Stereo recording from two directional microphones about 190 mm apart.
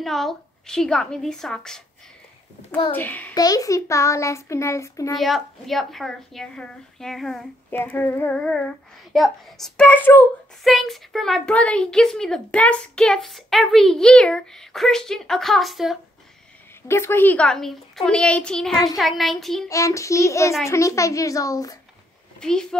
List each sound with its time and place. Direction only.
0.0 s child singing: centre (ahead or behind)
2.9 s a child's voice: 10° left (ahead or behind)
5.1 s child singing: centre (ahead or behind)
16.8 s child singing: 15° left (ahead or behind)
19.7 s a child's voice: 15° left (ahead or behind)
22.4 s child singing: 5° left (ahead or behind)